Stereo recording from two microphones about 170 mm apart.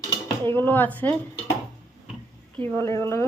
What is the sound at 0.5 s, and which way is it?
Speech, 10° left (ahead or behind).